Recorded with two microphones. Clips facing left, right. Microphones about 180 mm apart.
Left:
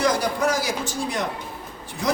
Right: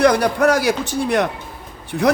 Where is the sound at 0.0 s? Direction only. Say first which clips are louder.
Right 7 dB; 65° right (ahead or behind).